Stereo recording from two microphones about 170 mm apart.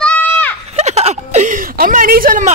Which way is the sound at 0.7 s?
40° right (ahead or behind).